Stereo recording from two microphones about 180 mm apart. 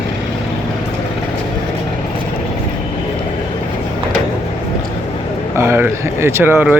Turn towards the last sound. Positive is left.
turn(degrees=-10)  # may be behind; listen again after turning